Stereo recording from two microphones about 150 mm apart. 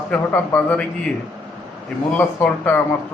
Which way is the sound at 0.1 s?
10° left (ahead or behind).